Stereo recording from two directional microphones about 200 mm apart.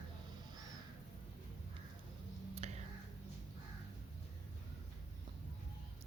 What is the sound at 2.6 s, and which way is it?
Whispering, 30° right (ahead or behind).